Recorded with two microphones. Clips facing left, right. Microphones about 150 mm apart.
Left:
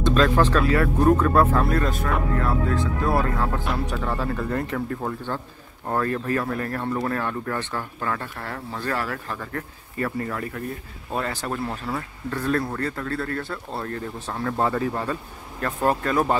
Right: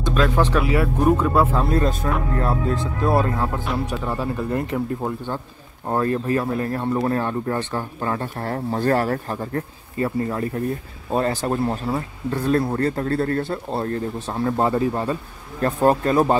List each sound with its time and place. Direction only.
0.0 s speech: 10° right (ahead or behind)
1.7 s speech: 25° right (ahead or behind)